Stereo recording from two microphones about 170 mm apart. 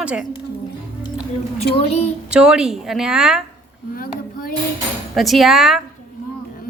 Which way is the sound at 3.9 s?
60° left (ahead or behind).